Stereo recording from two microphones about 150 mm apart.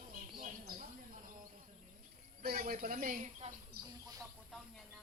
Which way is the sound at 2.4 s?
70° right (ahead or behind).